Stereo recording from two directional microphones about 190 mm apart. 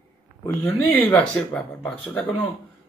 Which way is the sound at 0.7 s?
10° left (ahead or behind).